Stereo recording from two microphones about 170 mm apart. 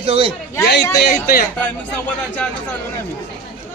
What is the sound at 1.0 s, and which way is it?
Speech, 65° left (ahead or behind).